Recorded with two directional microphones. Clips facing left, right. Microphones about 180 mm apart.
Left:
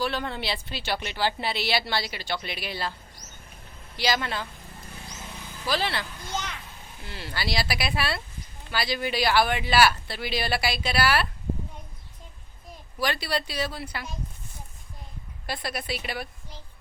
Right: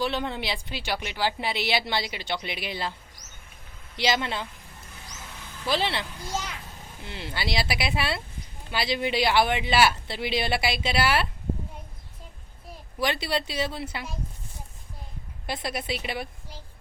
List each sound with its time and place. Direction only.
0.0 s speech: 20° right (ahead or behind)
3.9 s speech: 20° right (ahead or behind)
5.6 s speech: 25° right (ahead or behind)
6.3 s speech: 5° right (ahead or behind)
7.0 s speech: 20° right (ahead or behind)
13.0 s speech: 20° right (ahead or behind)
15.4 s speech: 20° right (ahead or behind)